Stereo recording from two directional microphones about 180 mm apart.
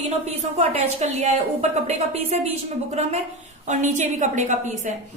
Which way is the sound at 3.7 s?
40° right (ahead or behind).